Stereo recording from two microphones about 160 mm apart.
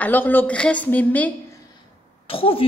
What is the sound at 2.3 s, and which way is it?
Speech, 35° left (ahead or behind).